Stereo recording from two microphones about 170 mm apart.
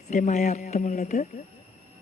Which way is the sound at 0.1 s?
45° left (ahead or behind).